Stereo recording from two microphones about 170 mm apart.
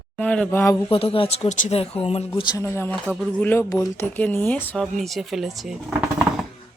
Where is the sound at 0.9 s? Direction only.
30° left (ahead or behind).